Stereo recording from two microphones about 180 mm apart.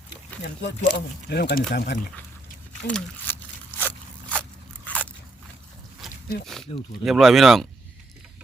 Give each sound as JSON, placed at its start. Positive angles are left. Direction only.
{"t": 0.4, "sound": "speech", "side_deg": 65}
{"t": 2.8, "sound": "speech", "side_deg": 5}
{"t": 3.8, "sound": "crunch", "side_deg": 10}
{"t": 6.0, "sound": "a sound", "side_deg": 0}
{"t": 6.7, "sound": "speech", "side_deg": 30}
{"t": 7.0, "sound": "speech", "side_deg": 0}